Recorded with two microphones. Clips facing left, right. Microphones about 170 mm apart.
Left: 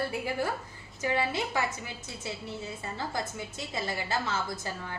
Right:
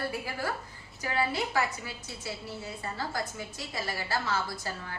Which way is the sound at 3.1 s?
20° left (ahead or behind).